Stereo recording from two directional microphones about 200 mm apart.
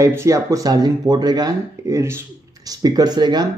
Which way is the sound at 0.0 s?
15° right (ahead or behind).